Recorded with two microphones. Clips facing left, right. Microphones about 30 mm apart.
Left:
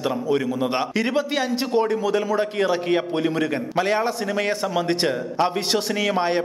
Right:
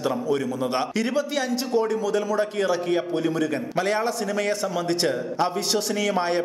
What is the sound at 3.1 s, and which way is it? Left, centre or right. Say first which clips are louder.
Speech: left 1 dB; left.